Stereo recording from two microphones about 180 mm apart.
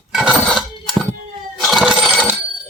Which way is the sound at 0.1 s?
Centre (ahead or behind).